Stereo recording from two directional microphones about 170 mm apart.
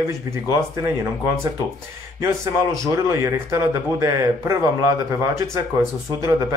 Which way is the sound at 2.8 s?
20° right (ahead or behind).